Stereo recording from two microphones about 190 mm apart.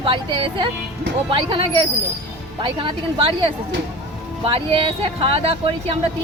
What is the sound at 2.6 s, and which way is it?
Speech, 25° right (ahead or behind).